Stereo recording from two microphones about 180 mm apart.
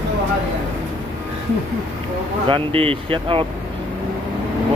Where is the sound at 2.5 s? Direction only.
30° right (ahead or behind).